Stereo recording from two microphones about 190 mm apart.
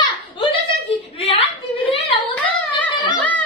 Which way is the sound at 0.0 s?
25° left (ahead or behind).